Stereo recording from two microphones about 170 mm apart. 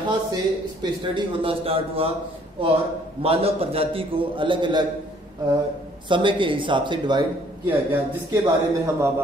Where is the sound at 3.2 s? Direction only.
35° right (ahead or behind).